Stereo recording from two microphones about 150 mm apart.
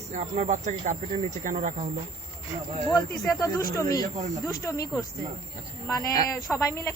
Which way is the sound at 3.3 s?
20° left (ahead or behind).